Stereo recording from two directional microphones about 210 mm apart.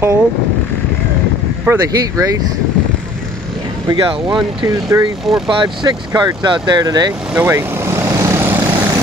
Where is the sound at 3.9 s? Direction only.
20° right (ahead or behind).